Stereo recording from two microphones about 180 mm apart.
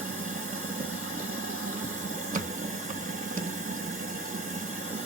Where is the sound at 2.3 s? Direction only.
45° right (ahead or behind).